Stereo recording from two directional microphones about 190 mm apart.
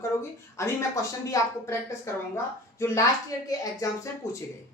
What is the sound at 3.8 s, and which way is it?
Speech, 15° left (ahead or behind).